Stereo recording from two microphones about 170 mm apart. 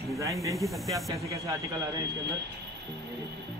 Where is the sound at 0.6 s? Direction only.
Centre (ahead or behind).